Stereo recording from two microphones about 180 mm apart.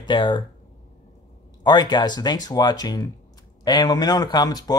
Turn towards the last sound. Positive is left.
turn(degrees=20)  # may be behind; listen again after turning